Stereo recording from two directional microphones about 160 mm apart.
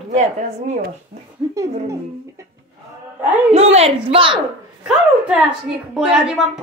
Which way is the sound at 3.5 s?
40° right (ahead or behind).